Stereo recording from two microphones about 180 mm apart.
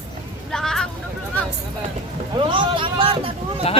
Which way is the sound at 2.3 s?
25° right (ahead or behind).